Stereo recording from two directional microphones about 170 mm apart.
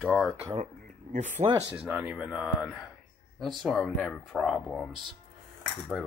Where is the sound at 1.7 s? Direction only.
5° right (ahead or behind).